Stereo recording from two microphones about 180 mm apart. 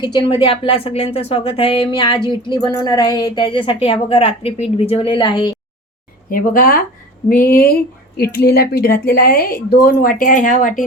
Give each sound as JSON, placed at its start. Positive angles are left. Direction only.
{"t": 0.0, "sound": "speech", "side_deg": 25}
{"t": 6.3, "sound": "speech", "side_deg": 50}